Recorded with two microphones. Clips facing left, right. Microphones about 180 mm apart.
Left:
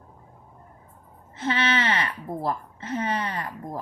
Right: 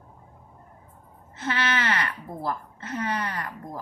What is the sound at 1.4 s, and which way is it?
A woman's voice, 25° left (ahead or behind).